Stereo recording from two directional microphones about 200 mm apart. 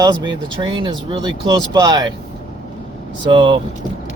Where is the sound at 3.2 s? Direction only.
25° right (ahead or behind).